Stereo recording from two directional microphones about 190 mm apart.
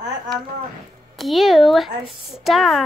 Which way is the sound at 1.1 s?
Centre (ahead or behind).